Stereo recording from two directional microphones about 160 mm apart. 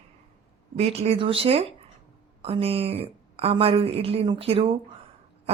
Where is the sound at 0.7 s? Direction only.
40° right (ahead or behind).